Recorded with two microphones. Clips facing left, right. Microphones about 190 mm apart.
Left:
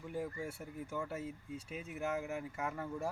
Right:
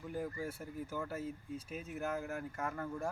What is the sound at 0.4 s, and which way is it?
Speech, 5° right (ahead or behind).